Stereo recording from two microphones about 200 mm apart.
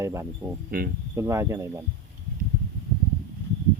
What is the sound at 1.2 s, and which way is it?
Speech, 15° right (ahead or behind).